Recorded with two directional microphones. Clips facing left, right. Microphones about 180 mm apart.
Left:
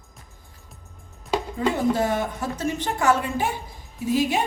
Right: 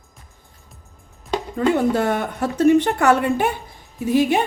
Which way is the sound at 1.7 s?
65° right (ahead or behind).